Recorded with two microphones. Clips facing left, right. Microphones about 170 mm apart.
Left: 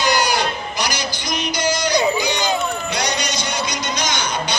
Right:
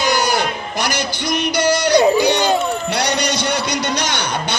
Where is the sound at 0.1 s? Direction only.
55° right (ahead or behind).